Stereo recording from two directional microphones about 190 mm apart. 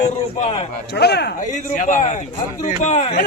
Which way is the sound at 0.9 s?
60° left (ahead or behind).